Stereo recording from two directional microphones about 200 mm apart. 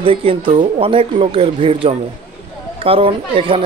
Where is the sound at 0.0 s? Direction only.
25° right (ahead or behind).